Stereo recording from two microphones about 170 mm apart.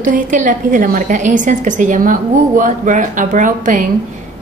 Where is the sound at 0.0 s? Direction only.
50° right (ahead or behind).